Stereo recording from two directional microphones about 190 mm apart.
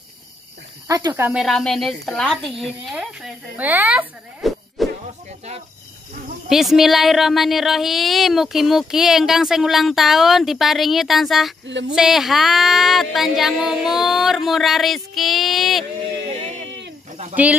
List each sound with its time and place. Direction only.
0.8 s speech: 20° right (ahead or behind)
1.4 s speech: centre (ahead or behind)
6.5 s speech: centre (ahead or behind)